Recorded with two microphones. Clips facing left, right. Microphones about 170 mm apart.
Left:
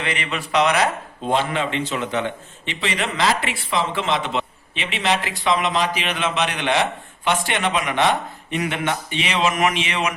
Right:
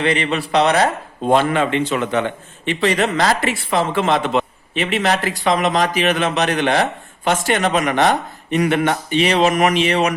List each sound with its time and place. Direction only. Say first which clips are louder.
0.0 s speech: right 8 dB; 35° right (ahead or behind)
1.3 s a man's voice: right 6 dB; 55° right (ahead or behind); by 10.2 s 40° right (ahead or behind)